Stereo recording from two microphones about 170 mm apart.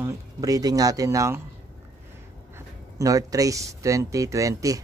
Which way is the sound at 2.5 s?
20° right (ahead or behind).